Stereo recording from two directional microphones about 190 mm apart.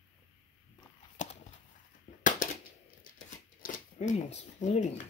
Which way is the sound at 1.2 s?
40° left (ahead or behind).